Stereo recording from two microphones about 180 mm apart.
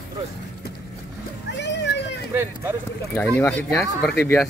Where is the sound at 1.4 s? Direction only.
75° left (ahead or behind).